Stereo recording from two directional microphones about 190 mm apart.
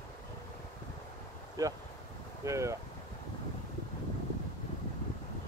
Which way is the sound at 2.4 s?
15° right (ahead or behind).